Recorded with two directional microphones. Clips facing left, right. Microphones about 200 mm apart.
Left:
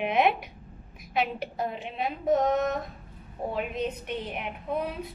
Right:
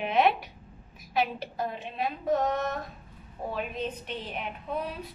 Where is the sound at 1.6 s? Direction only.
20° left (ahead or behind).